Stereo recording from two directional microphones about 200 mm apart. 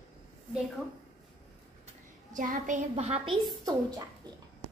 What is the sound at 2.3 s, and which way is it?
A woman's voice, 40° right (ahead or behind).